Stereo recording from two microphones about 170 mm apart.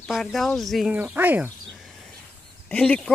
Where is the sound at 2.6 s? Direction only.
5° left (ahead or behind).